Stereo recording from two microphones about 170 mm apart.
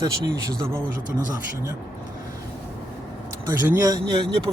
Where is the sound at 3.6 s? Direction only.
15° right (ahead or behind).